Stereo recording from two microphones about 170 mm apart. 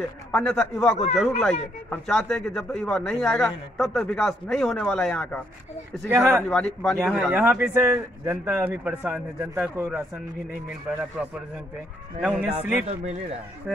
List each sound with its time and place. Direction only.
0.3 s speech: 5° left (ahead or behind)
6.0 s a man's voice: 15° right (ahead or behind)
6.5 s a man's voice: 5° left (ahead or behind); by 10.0 s 15° right (ahead or behind)
11.2 s speech: 5° right (ahead or behind)
12.8 s speech: 40° right (ahead or behind)